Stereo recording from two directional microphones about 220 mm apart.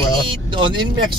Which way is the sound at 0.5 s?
20° right (ahead or behind).